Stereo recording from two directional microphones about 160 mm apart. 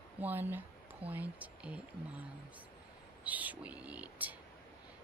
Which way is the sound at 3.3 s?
10° right (ahead or behind).